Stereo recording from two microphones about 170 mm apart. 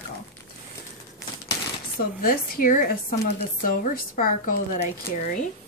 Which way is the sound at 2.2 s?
55° left (ahead or behind).